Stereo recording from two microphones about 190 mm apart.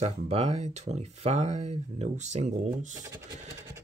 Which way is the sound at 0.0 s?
35° right (ahead or behind).